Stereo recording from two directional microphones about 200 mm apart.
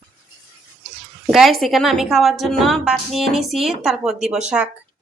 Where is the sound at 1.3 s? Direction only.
Centre (ahead or behind).